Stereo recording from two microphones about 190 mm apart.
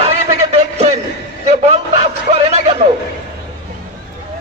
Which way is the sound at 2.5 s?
35° right (ahead or behind).